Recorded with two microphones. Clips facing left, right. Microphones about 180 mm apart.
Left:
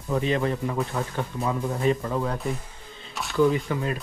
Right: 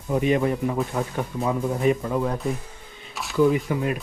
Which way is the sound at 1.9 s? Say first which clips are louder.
Right 2 dB; 10° right (ahead or behind).